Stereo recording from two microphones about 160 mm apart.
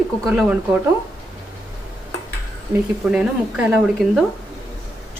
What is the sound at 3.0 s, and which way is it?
Speech, 5° right (ahead or behind).